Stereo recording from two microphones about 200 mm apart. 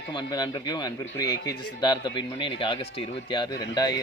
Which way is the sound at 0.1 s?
20° left (ahead or behind).